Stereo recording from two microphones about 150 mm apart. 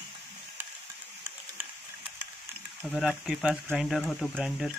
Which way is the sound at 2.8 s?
Centre (ahead or behind).